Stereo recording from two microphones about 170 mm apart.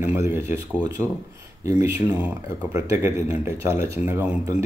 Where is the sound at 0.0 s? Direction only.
15° right (ahead or behind).